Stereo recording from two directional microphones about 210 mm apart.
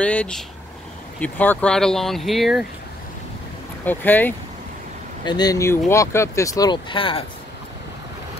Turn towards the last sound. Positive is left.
turn(degrees=25)  # may be behind; listen again after turning